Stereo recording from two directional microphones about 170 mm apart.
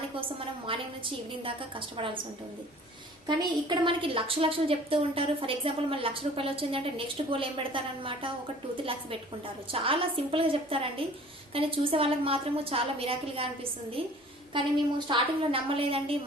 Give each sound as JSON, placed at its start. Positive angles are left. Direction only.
{"t": 0.2, "sound": "a woman's voice", "side_deg": -30}
{"t": 3.2, "sound": "a woman's voice", "side_deg": -25}